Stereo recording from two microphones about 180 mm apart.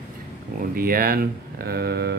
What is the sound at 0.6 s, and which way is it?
Speech, 55° right (ahead or behind).